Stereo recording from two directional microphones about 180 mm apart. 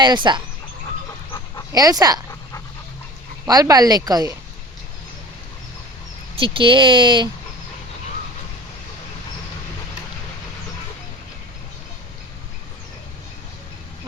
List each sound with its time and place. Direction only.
0.0 s speech: 25° right (ahead or behind)
1.7 s speech: 20° right (ahead or behind)
3.4 s speech: 20° right (ahead or behind)
6.3 s speech: 30° right (ahead or behind)